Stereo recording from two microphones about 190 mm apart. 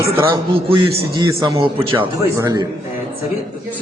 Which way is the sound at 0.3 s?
25° right (ahead or behind).